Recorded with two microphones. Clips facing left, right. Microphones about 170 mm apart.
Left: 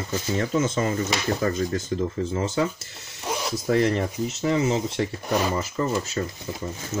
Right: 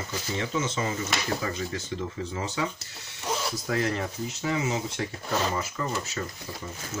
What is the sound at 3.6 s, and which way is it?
Speech, 35° left (ahead or behind).